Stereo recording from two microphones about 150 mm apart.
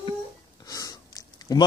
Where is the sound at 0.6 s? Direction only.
25° left (ahead or behind).